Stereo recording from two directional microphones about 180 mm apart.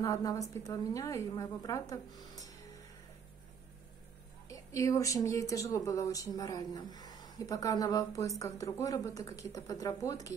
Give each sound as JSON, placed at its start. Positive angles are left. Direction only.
{"t": 0.0, "sound": "speech", "side_deg": 20}
{"t": 4.5, "sound": "speech", "side_deg": 20}